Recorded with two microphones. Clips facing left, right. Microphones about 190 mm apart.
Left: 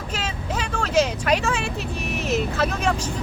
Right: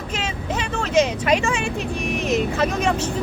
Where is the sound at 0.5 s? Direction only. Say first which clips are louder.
Right 2 dB; 5° right (ahead or behind).